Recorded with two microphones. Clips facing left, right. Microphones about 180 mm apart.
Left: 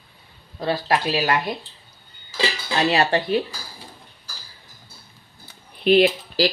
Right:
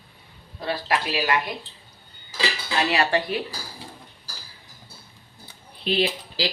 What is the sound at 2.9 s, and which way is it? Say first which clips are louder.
Speech: left 4 dB; 30° left (ahead or behind).